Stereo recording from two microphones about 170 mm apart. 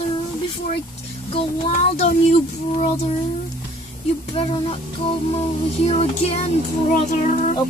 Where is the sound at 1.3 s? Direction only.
40° left (ahead or behind).